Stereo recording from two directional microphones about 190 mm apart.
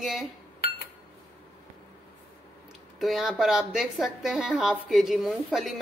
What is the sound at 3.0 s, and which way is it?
A woman's voice, centre (ahead or behind).